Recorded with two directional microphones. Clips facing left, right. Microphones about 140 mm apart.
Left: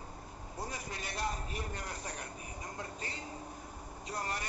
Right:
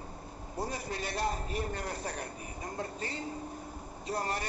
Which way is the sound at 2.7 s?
30° right (ahead or behind).